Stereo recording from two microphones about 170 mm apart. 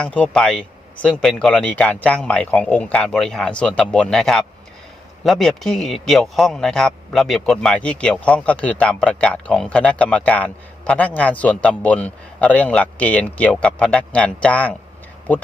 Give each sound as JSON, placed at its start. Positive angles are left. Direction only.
{"t": 0.0, "sound": "a man's voice", "side_deg": 5}